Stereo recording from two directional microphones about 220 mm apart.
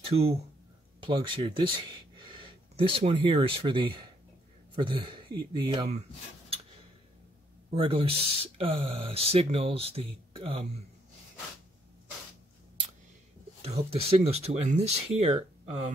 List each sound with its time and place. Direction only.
0.1 s speech: 25° right (ahead or behind)
7.7 s speech: 25° right (ahead or behind)
13.6 s speech: 30° right (ahead or behind)